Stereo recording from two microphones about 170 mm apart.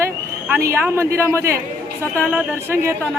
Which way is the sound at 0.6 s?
15° right (ahead or behind).